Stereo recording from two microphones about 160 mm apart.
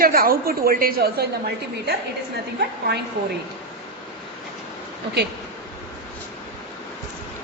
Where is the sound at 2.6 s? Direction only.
90° right.